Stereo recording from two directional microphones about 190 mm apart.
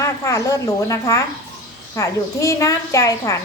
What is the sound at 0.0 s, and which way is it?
A woman's voice, 15° left (ahead or behind).